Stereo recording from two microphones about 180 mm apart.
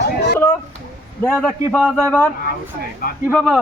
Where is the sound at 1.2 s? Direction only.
5° left (ahead or behind).